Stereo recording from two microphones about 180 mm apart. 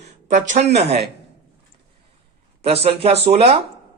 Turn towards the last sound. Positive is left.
turn(degrees=-35)  # may be behind; listen again after turning